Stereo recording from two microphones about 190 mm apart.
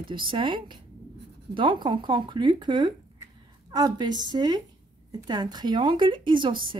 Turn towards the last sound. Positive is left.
turn(degrees=-25)  # may be behind; listen again after turning